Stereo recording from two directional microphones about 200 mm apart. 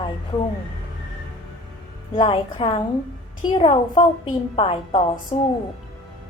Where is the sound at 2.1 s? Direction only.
25° left (ahead or behind).